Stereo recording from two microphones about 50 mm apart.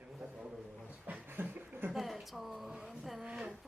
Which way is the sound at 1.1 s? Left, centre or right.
Right.